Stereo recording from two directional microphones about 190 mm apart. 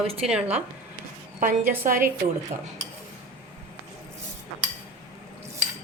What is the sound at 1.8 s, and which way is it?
Speech, 45° right (ahead or behind).